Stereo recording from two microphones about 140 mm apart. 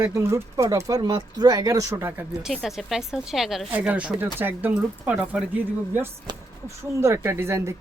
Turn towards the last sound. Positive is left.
turn(degrees=-20)  # may be behind; listen again after turning